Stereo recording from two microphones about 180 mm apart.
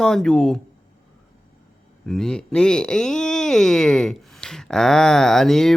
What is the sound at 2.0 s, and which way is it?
Speech, 5° left (ahead or behind).